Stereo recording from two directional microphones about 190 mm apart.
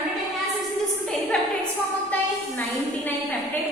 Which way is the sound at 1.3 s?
5° left (ahead or behind).